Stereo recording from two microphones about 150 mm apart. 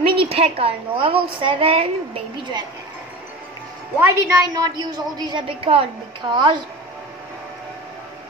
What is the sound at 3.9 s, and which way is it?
A woman's voice, 15° right (ahead or behind).